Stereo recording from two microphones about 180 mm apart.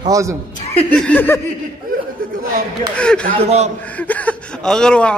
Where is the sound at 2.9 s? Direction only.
5° left (ahead or behind).